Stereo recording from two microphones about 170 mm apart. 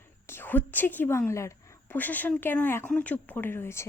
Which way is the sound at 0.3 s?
10° left (ahead or behind).